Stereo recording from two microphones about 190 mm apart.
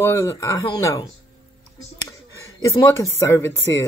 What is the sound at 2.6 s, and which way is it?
Speech, 15° left (ahead or behind).